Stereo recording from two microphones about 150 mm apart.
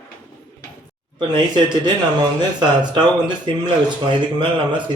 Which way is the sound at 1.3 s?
30° right (ahead or behind).